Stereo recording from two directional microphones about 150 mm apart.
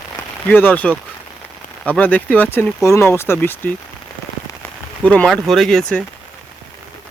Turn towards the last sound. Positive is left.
turn(degrees=5)  # may be behind; listen again after turning